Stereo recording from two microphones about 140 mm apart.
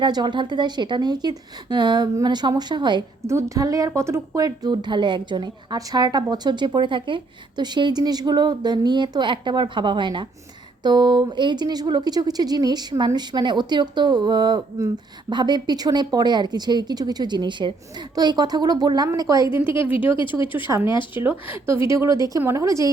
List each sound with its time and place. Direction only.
0.0 s a woman's voice: 30° right (ahead or behind)
3.2 s a woman's voice: 20° right (ahead or behind)
19.8 s speech: 10° right (ahead or behind)
20.1 s speech: 35° left (ahead or behind)
20.5 s speech: 15° right (ahead or behind)